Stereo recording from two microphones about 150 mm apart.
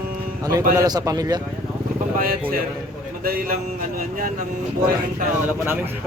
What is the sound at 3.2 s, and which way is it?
Speech, 75° right (ahead or behind).